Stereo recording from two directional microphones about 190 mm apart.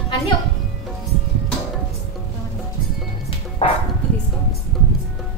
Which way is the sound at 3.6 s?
30° left (ahead or behind).